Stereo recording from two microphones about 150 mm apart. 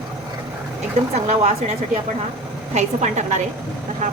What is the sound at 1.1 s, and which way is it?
Speech, 45° right (ahead or behind).